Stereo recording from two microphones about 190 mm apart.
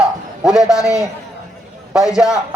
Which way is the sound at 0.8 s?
15° left (ahead or behind).